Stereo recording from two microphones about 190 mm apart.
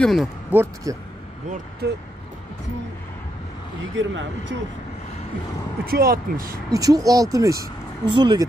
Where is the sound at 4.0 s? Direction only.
80° right.